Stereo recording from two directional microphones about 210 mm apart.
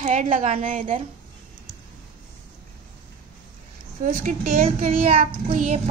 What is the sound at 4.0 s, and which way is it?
A woman's voice, 40° right (ahead or behind).